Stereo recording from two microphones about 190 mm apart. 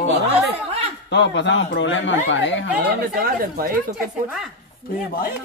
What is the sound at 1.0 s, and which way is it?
A man's voice, 65° left (ahead or behind).